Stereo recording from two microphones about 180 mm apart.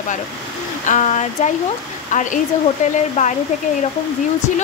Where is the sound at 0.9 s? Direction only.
40° left (ahead or behind).